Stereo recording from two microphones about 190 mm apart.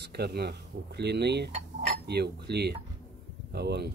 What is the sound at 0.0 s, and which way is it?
Speech, 60° right (ahead or behind).